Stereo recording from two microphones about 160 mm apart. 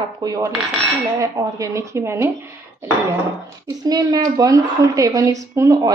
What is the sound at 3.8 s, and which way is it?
Speech, 25° right (ahead or behind).